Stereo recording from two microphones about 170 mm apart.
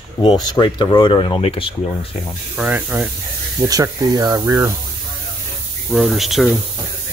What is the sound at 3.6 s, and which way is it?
Speech, 20° right (ahead or behind).